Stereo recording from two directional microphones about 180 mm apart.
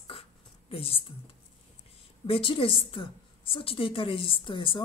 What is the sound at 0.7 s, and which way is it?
Speech, 30° left (ahead or behind).